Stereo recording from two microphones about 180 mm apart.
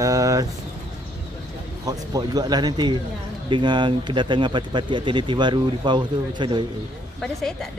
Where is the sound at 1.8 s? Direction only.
20° right (ahead or behind).